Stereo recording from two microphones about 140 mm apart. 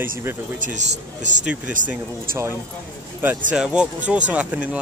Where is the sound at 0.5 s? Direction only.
65° right (ahead or behind).